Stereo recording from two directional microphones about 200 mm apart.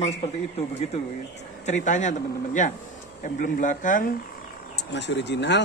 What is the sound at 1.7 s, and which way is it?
A man's voice, 35° left (ahead or behind).